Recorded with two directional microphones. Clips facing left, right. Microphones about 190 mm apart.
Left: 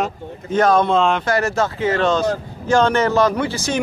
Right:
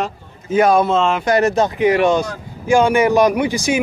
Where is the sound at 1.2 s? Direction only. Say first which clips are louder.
Right 4 dB; 20° right (ahead or behind).